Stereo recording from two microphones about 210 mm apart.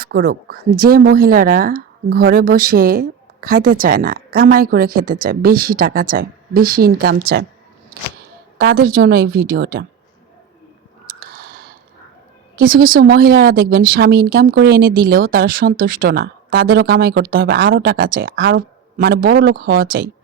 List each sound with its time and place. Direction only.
0.0 s speech: 45° right (ahead or behind)
8.5 s speech: 45° right (ahead or behind)
11.0 s a sound: 45° right (ahead or behind)
12.5 s speech: 45° right (ahead or behind)